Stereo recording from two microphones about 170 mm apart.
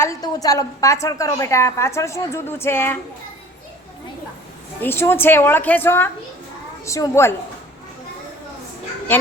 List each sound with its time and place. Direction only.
0.0 s a woman's voice: 20° left (ahead or behind)
4.8 s a woman's voice: 15° left (ahead or behind)